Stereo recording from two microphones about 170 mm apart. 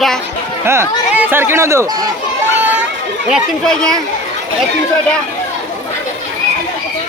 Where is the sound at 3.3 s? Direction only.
5° left (ahead or behind).